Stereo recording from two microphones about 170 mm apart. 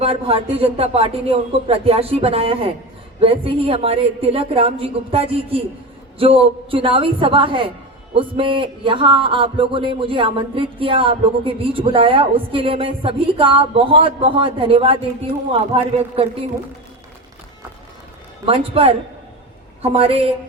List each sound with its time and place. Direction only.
0.0 s a man's voice: 35° right (ahead or behind)
18.4 s a man's voice: 35° right (ahead or behind)